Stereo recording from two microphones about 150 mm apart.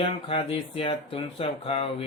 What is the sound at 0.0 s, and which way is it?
Speech, 40° left (ahead or behind).